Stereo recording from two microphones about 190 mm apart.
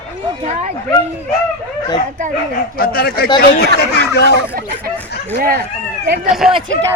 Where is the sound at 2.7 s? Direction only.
50° left (ahead or behind).